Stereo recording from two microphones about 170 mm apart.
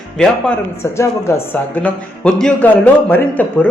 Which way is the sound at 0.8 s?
15° left (ahead or behind).